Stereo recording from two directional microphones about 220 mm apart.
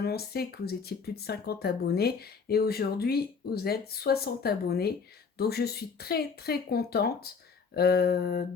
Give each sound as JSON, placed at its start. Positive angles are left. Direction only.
{"t": 0.0, "sound": "speech", "side_deg": 45}